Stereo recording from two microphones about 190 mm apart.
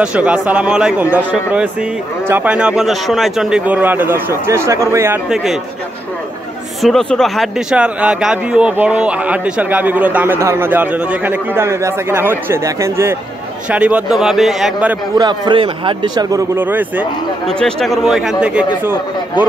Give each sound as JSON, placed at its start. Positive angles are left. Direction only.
{"t": 0.0, "sound": "speech", "side_deg": -5}
{"t": 5.3, "sound": "speech", "side_deg": 0}
{"t": 6.8, "sound": "speech", "side_deg": 0}
{"t": 15.1, "sound": "speech", "side_deg": -25}
{"t": 17.5, "sound": "speech", "side_deg": 5}